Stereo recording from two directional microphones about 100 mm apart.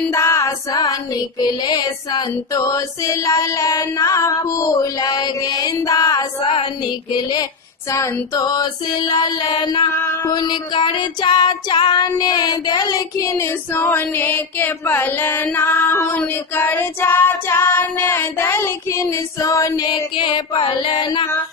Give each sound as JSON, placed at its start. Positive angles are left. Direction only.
{"t": 0.1, "sound": "music", "side_deg": 30}
{"t": 1.4, "sound": "female singing", "side_deg": 45}
{"t": 7.9, "sound": "female singing", "side_deg": 35}
{"t": 15.4, "sound": "child singing", "side_deg": 20}
{"t": 19.9, "sound": "music", "side_deg": 55}